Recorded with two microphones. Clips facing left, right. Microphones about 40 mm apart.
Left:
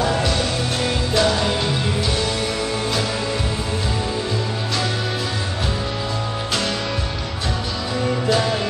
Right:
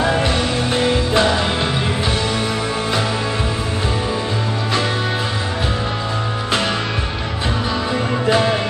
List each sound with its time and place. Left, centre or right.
0.0 s music: right
8.3 s music: right